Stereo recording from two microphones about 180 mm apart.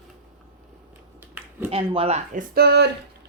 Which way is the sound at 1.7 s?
30° right (ahead or behind).